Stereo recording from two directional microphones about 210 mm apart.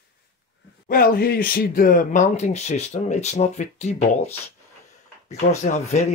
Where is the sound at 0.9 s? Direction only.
45° left (ahead or behind).